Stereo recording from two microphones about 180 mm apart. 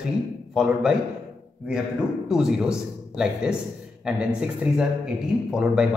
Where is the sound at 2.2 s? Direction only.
5° right (ahead or behind).